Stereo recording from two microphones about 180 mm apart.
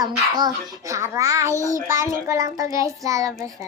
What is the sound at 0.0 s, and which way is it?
A child's voice, 20° right (ahead or behind).